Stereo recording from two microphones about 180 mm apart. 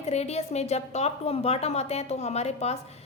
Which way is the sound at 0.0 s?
35° left (ahead or behind).